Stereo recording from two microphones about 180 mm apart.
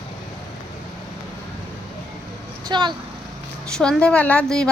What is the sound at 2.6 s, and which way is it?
Vehicle, 25° right (ahead or behind).